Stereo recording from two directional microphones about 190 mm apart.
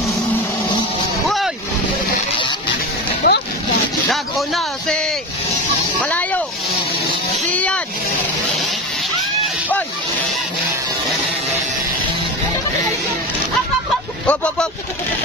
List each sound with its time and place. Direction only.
3.2 s boat: 55° left (ahead or behind)
4.1 s a sound: centre (ahead or behind)
7.5 s vehicle: 5° left (ahead or behind)
14.2 s speech: 5° left (ahead or behind)